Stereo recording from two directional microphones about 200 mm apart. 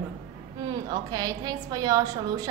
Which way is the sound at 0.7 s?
20° right (ahead or behind).